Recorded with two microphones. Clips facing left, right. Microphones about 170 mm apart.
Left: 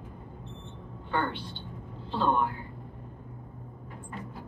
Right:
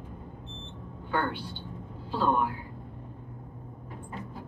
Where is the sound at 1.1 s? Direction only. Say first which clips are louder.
Right 1 dB; 10° right (ahead or behind).